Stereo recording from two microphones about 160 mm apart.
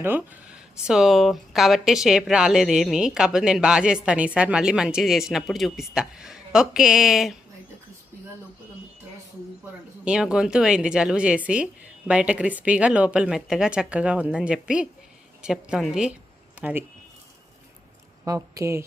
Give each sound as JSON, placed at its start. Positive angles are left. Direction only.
{"t": 0.0, "sound": "speech", "side_deg": -10}
{"t": 10.0, "sound": "a woman's voice", "side_deg": -5}
{"t": 18.3, "sound": "a woman's voice", "side_deg": -20}